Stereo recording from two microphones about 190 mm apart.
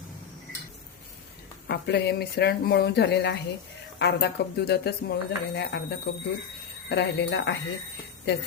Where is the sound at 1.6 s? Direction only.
60° left (ahead or behind).